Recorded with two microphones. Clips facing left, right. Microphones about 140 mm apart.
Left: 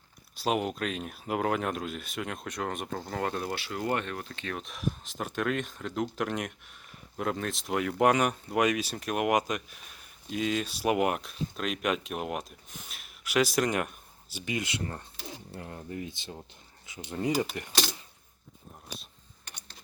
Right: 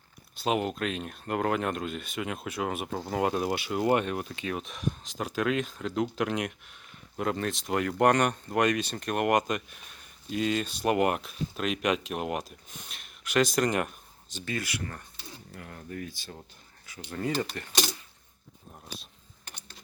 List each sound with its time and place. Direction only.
0.3 s speech: centre (ahead or behind)
14.3 s speech: 15° left (ahead or behind)
15.1 s a sound: 90° left
15.5 s speech: 25° left (ahead or behind)
17.4 s speech: 10° left (ahead or behind)